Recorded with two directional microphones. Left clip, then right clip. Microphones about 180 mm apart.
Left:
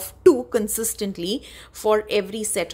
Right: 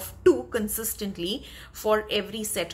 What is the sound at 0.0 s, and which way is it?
A woman's voice, 45° left (ahead or behind).